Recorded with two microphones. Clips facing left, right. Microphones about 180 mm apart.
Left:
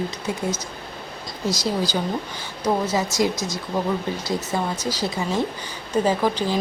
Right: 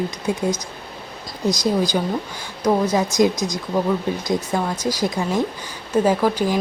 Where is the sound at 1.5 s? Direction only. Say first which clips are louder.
Right 4 dB; 15° right (ahead or behind).